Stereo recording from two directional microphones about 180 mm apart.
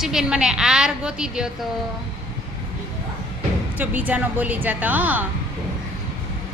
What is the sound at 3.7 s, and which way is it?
A woman's voice, 10° right (ahead or behind).